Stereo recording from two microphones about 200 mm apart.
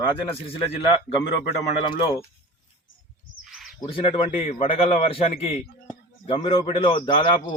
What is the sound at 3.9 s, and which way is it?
A man's voice, 30° left (ahead or behind).